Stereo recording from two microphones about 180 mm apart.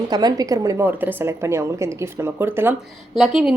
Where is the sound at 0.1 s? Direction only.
20° right (ahead or behind).